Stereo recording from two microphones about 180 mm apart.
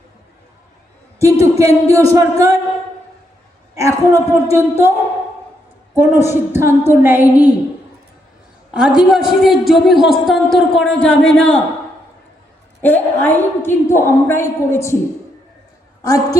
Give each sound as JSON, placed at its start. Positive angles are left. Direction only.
{"t": 1.2, "sound": "speech", "side_deg": -15}
{"t": 3.8, "sound": "speech", "side_deg": -15}
{"t": 5.9, "sound": "speech", "side_deg": -15}
{"t": 8.7, "sound": "a man's voice", "side_deg": -5}
{"t": 12.8, "sound": "a woman's voice", "side_deg": 10}
{"t": 16.0, "sound": "a woman's voice", "side_deg": 20}